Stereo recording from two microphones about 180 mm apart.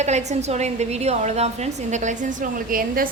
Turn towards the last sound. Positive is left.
turn(degrees=-50)  # may be behind; listen again after turning